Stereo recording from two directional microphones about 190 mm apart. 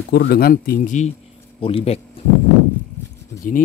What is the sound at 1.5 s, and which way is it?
Speech, 30° left (ahead or behind).